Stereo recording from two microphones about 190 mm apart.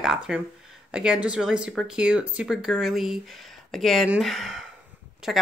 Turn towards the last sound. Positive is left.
turn(degrees=-5)  # may be behind; listen again after turning